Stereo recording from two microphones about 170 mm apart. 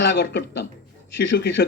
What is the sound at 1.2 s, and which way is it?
Speech, 90° left.